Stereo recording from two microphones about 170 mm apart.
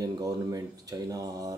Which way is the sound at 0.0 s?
20° right (ahead or behind).